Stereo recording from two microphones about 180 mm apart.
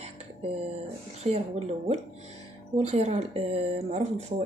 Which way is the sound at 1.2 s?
35° right (ahead or behind).